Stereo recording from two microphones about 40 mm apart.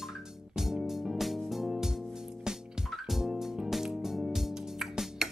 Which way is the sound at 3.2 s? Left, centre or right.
Centre.